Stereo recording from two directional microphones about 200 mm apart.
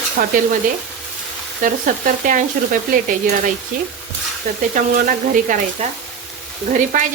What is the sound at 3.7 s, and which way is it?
Speech, 40° right (ahead or behind).